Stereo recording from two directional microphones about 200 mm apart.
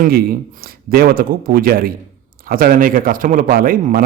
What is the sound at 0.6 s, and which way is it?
Speech, 50° right (ahead or behind).